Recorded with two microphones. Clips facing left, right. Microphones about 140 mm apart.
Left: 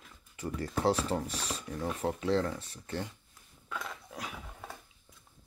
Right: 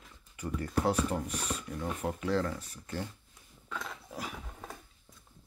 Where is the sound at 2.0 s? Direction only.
25° left (ahead or behind).